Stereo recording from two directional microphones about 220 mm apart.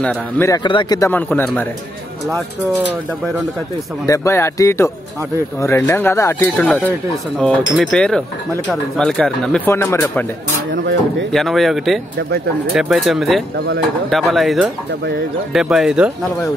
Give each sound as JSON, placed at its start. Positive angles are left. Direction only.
{"t": 0.0, "sound": "speech", "side_deg": 10}
{"t": 0.7, "sound": "speech", "side_deg": 20}
{"t": 4.0, "sound": "speech", "side_deg": 15}
{"t": 10.7, "sound": "speech", "side_deg": -55}
{"t": 11.3, "sound": "speech", "side_deg": 0}